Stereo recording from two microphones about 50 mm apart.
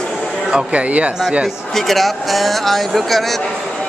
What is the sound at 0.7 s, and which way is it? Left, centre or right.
Speech, right.